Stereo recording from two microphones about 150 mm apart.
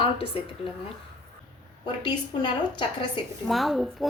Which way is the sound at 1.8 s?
30° left (ahead or behind).